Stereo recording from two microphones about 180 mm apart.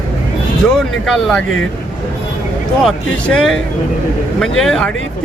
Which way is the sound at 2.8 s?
5° left (ahead or behind).